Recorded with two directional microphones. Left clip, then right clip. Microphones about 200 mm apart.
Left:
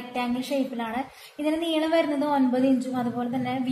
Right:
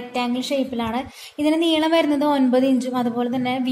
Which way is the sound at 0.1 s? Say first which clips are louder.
Right 5 dB; 50° right (ahead or behind).